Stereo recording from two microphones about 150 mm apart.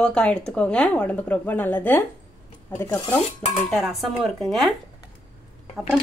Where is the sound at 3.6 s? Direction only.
Centre (ahead or behind).